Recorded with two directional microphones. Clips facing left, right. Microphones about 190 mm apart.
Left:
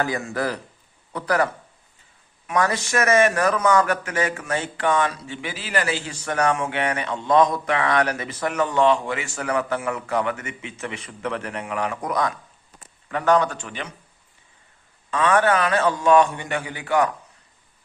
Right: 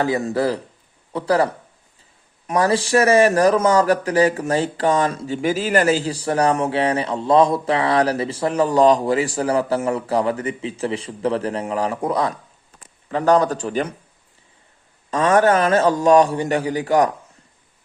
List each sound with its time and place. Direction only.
0.0 s a man's voice: 30° right (ahead or behind)
15.1 s a man's voice: 40° right (ahead or behind)